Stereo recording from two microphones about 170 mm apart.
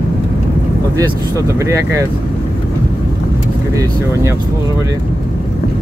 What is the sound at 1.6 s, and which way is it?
Speech, 15° right (ahead or behind).